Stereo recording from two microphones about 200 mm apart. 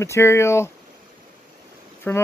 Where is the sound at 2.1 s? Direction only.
10° left (ahead or behind).